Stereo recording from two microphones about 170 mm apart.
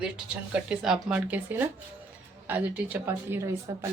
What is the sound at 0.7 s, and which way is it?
Speech, 5° right (ahead or behind).